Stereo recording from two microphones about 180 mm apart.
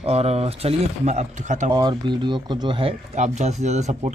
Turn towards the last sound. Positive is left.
turn(degrees=-40)  # may be behind; listen again after turning